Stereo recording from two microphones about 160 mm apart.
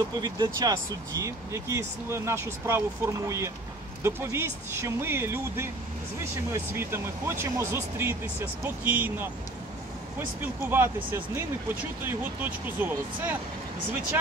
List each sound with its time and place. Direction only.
0.2 s speech: 25° right (ahead or behind)